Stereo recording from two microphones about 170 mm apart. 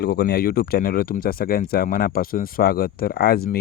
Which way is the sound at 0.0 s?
70° left (ahead or behind).